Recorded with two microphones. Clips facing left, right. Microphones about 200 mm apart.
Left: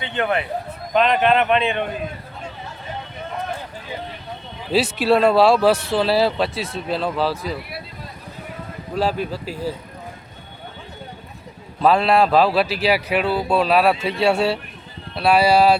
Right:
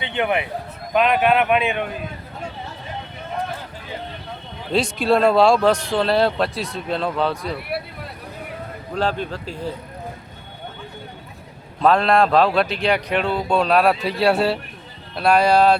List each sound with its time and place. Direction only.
0.0 s a man's voice: 15° right (ahead or behind)
4.7 s speech: 5° left (ahead or behind)
9.0 s a man's voice: 5° left (ahead or behind)
11.8 s a man's voice: 5° left (ahead or behind)